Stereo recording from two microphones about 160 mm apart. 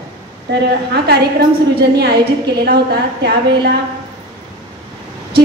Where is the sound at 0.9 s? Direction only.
90° right.